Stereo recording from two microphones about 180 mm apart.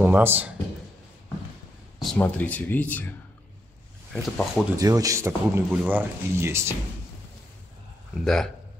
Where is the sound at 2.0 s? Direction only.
5° left (ahead or behind).